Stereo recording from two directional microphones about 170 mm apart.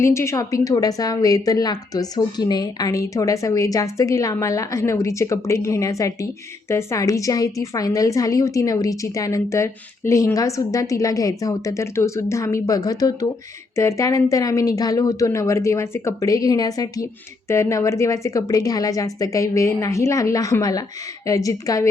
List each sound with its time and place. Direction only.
0.0 s a woman's voice: 15° left (ahead or behind)